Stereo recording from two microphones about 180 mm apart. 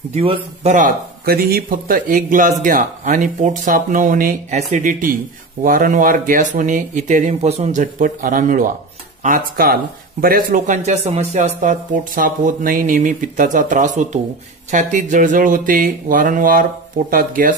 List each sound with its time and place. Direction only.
0.1 s a man's voice: 35° right (ahead or behind)
0.7 s a man's voice: 50° right (ahead or behind)